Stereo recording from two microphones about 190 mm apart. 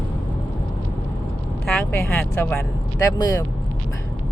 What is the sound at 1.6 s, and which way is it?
Speech, 15° left (ahead or behind).